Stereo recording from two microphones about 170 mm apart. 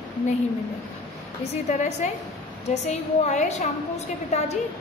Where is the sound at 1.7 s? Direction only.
45° left (ahead or behind).